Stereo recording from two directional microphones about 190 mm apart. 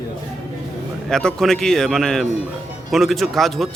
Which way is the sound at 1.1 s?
5° left (ahead or behind).